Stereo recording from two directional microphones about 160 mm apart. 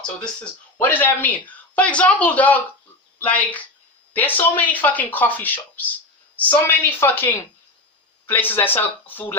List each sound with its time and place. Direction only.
0.8 s speech: 10° left (ahead or behind)